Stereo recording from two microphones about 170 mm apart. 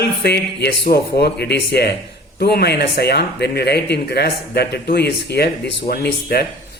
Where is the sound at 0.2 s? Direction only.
75° left (ahead or behind).